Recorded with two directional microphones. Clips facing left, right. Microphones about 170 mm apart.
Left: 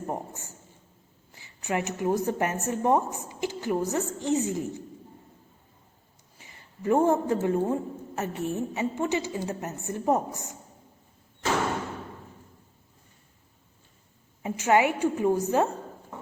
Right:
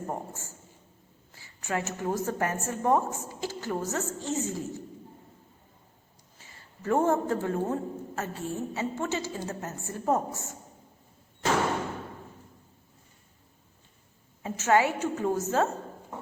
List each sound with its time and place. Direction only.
0.1 s a man's voice: 20° left (ahead or behind)
6.4 s a man's voice: 15° left (ahead or behind)
14.4 s a man's voice: 15° left (ahead or behind)